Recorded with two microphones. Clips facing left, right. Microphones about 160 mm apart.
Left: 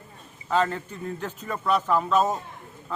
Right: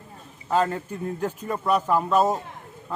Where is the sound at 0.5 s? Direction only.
5° right (ahead or behind).